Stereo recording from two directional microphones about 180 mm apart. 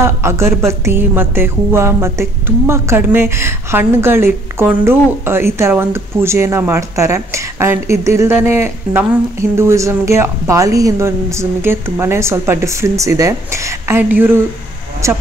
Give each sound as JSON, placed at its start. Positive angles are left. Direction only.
{"t": 0.0, "sound": "music", "side_deg": -15}